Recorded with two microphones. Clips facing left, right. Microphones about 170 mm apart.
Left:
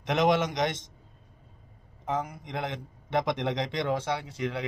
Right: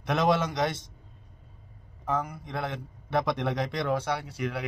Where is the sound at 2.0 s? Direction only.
20° left (ahead or behind).